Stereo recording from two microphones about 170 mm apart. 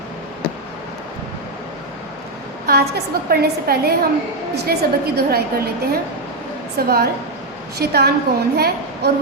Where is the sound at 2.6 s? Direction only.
65° right (ahead or behind).